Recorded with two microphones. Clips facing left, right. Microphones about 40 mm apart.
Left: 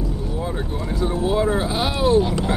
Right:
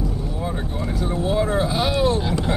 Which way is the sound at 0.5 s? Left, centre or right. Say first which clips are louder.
Even; centre.